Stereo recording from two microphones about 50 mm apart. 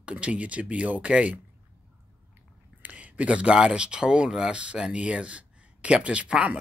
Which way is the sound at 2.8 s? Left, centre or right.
Right.